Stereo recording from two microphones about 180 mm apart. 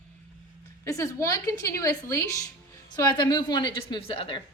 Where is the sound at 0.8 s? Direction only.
15° left (ahead or behind).